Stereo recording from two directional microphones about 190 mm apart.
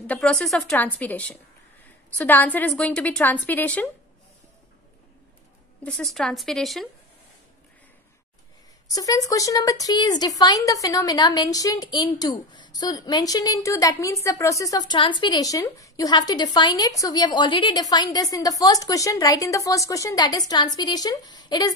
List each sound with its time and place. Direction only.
0.0 s a woman's voice: 5° left (ahead or behind)
6.1 s a woman's voice: centre (ahead or behind)
8.9 s a woman's voice: 20° left (ahead or behind)